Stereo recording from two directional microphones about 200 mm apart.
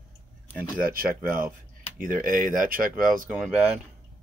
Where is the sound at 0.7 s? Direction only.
45° right (ahead or behind).